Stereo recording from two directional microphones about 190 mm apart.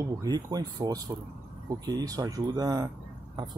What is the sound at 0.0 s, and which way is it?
Speech, 20° right (ahead or behind).